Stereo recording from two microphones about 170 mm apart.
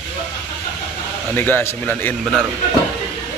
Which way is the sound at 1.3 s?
10° left (ahead or behind).